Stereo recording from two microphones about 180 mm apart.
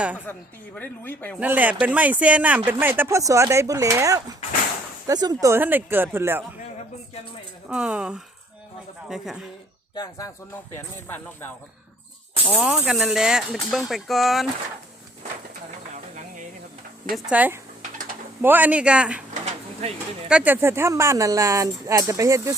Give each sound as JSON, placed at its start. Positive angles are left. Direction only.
{"t": 0.3, "sound": "speech", "side_deg": 10}
{"t": 1.4, "sound": "speech", "side_deg": -10}
{"t": 7.7, "sound": "speech", "side_deg": -5}
{"t": 9.9, "sound": "speech", "side_deg": 20}
{"t": 12.5, "sound": "speech", "side_deg": -5}
{"t": 17.2, "sound": "speech", "side_deg": -5}
{"t": 20.2, "sound": "speech", "side_deg": -5}